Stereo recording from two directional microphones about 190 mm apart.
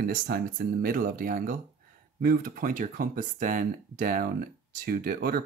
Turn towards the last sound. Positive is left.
turn(degrees=-50)  # may be behind; listen again after turning